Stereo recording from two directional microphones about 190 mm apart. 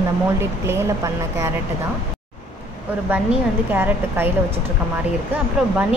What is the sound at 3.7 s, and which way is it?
Speech, 10° right (ahead or behind).